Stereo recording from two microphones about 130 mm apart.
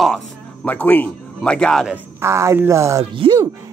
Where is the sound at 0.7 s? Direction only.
15° left (ahead or behind).